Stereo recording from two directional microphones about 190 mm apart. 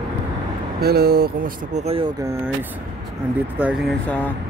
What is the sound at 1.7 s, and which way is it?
Speech, 35° right (ahead or behind).